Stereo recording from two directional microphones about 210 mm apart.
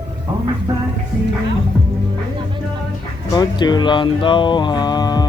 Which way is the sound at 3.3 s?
20° left (ahead or behind).